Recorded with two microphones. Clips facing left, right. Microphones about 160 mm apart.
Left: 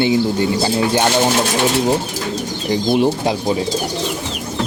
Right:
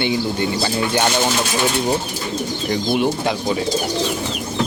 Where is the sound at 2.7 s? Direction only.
35° left (ahead or behind).